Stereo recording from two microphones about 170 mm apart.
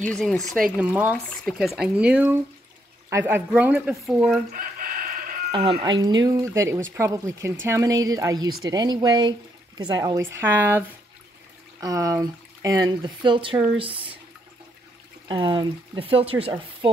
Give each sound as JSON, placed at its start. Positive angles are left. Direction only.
{"t": 0.0, "sound": "speech", "side_deg": 5}
{"t": 4.5, "sound": "chicken", "side_deg": -55}
{"t": 5.5, "sound": "speech", "side_deg": -30}
{"t": 15.2, "sound": "speech", "side_deg": -30}